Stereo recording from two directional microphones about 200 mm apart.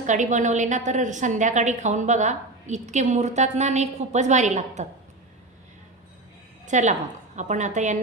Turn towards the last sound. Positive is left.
turn(degrees=-35)  # may be behind; listen again after turning